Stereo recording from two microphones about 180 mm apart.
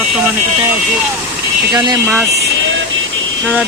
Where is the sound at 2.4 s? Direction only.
90° right.